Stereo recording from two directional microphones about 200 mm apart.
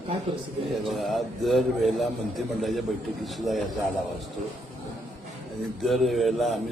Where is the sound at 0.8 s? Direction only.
Centre (ahead or behind).